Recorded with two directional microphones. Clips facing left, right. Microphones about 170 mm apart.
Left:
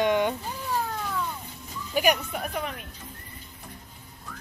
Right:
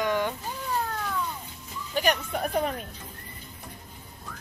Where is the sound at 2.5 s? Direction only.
35° right (ahead or behind).